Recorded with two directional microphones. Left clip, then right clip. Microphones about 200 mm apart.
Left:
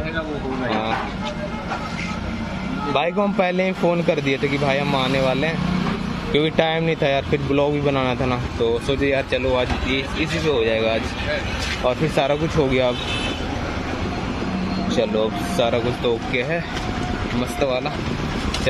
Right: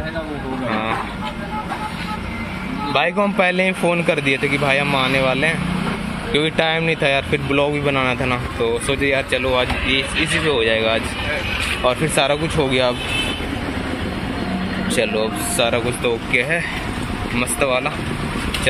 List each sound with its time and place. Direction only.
2.9 s speech: 5° left (ahead or behind)
15.0 s speech: 10° left (ahead or behind)